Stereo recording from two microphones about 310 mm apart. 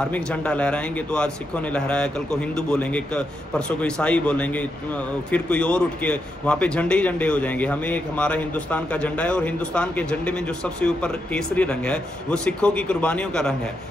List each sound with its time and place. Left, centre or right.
0.1 s a man's voice: centre